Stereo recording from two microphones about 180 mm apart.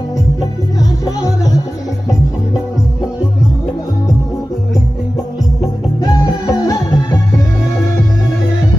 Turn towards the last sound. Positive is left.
turn(degrees=20)  # may be behind; listen again after turning